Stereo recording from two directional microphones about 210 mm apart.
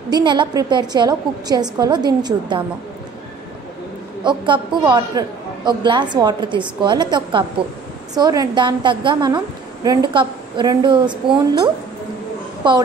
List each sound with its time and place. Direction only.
0.1 s a woman's voice: 20° right (ahead or behind)
4.2 s a woman's voice: 20° right (ahead or behind)